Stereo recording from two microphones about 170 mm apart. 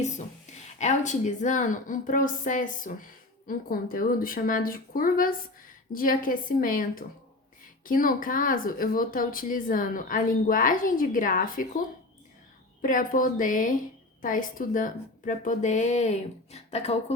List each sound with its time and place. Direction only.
0.8 s a woman's voice: 45° left (ahead or behind)
12.8 s speech: 50° left (ahead or behind)